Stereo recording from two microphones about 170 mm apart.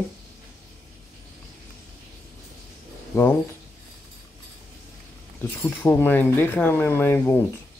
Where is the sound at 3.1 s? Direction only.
20° left (ahead or behind).